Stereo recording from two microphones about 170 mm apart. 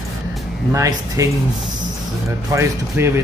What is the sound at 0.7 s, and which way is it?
Speech, 20° right (ahead or behind).